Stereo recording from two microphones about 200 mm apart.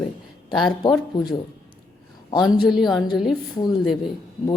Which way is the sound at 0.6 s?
20° left (ahead or behind).